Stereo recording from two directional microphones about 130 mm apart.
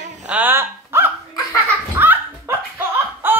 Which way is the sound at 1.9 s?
15° right (ahead or behind).